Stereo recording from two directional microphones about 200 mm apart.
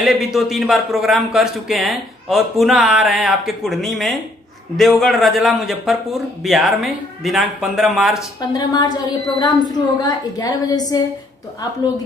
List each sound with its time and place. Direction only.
0.0 s a man's voice: centre (ahead or behind)
8.4 s a woman's voice: 20° left (ahead or behind)